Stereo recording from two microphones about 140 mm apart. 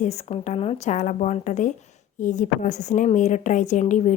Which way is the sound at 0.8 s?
60° left (ahead or behind).